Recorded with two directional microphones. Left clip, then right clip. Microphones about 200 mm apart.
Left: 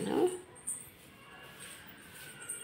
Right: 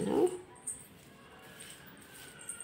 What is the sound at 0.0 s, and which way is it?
Dog, 15° right (ahead or behind).